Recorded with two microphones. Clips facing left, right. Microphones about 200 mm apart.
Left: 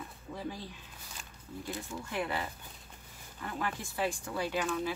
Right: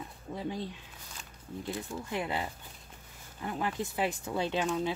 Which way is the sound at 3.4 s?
20° right (ahead or behind).